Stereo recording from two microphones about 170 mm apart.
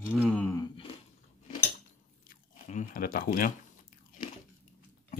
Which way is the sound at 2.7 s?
50° left (ahead or behind).